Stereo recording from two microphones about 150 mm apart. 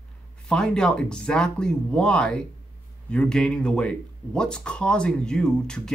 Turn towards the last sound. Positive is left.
turn(degrees=5)  # may be behind; listen again after turning